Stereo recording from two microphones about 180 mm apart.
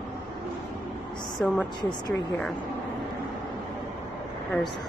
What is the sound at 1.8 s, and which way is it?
Speech, 25° left (ahead or behind).